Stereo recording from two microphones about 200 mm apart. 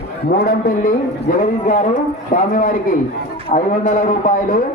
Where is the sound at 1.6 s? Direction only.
40° left (ahead or behind).